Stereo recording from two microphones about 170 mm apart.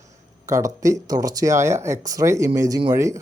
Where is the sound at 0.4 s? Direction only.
20° right (ahead or behind).